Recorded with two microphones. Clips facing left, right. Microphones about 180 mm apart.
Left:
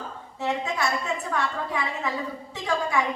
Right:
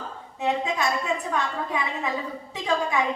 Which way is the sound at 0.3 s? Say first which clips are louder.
Right 2 dB; 20° right (ahead or behind).